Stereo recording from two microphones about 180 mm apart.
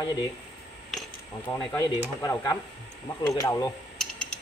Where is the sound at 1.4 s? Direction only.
10° left (ahead or behind).